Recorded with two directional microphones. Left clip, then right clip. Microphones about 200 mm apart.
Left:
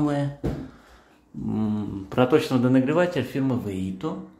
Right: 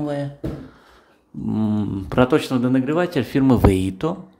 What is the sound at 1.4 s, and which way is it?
Speech, 25° right (ahead or behind).